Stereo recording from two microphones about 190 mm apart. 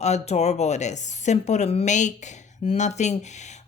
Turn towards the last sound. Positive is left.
turn(degrees=35)  # may be behind; listen again after turning